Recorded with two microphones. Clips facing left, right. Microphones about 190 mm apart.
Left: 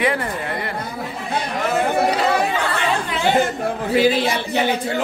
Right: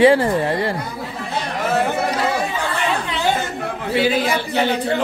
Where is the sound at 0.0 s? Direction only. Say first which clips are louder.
Right 8 dB; 30° right (ahead or behind).